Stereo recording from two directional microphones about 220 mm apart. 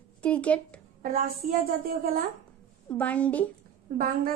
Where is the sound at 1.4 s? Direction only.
35° right (ahead or behind).